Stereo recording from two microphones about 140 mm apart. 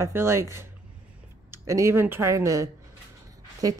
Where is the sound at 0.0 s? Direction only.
20° right (ahead or behind).